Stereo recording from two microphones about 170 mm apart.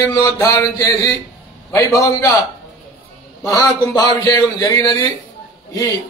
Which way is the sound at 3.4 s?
20° left (ahead or behind).